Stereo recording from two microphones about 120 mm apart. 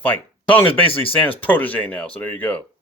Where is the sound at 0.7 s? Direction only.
50° left (ahead or behind).